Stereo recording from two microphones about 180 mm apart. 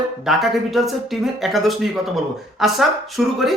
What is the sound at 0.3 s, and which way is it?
Speech, centre (ahead or behind).